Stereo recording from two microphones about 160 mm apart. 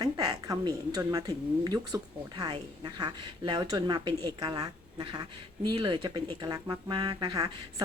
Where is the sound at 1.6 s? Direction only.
25° right (ahead or behind).